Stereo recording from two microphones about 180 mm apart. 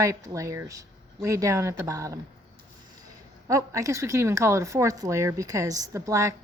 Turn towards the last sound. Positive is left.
turn(degrees=-15)  # may be behind; listen again after turning